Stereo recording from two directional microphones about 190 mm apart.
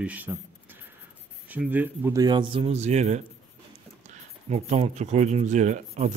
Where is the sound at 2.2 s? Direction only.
25° right (ahead or behind).